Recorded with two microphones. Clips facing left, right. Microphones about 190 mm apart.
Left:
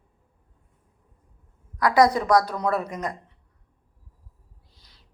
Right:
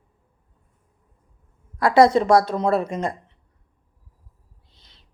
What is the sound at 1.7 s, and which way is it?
A woman's voice, 25° right (ahead or behind).